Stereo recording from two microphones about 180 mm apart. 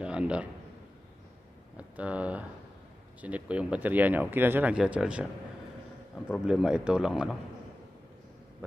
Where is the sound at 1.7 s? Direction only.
5° right (ahead or behind).